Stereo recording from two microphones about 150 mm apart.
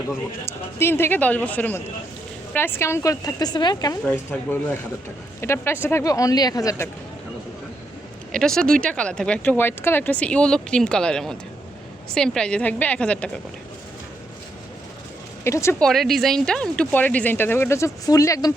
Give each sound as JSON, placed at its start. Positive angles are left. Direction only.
{"t": 0.1, "sound": "speech", "side_deg": 15}
{"t": 4.0, "sound": "speech", "side_deg": 15}
{"t": 8.3, "sound": "speech", "side_deg": 5}
{"t": 15.4, "sound": "speech", "side_deg": 20}
{"t": 15.8, "sound": "speech", "side_deg": 0}